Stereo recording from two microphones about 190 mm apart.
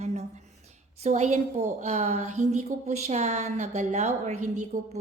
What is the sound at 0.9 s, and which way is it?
A woman's voice, 35° right (ahead or behind).